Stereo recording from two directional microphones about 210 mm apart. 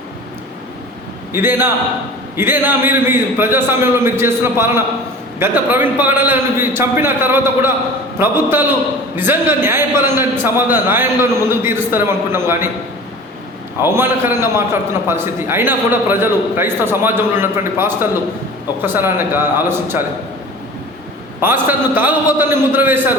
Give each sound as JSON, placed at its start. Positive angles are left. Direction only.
{"t": 1.3, "sound": "a man's voice", "side_deg": -10}
{"t": 13.8, "sound": "a man's voice", "side_deg": -10}
{"t": 21.4, "sound": "a man's voice", "side_deg": -10}